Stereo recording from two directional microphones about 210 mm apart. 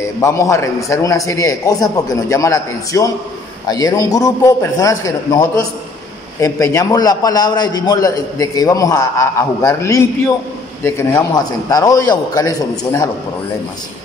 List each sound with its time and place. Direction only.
0.2 s a man's voice: 15° left (ahead or behind)